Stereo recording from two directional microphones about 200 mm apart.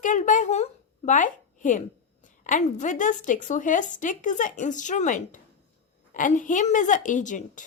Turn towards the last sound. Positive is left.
turn(degrees=40)  # may be behind; listen again after turning